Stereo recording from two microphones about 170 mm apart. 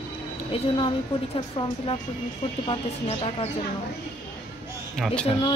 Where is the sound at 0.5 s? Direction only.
30° left (ahead or behind).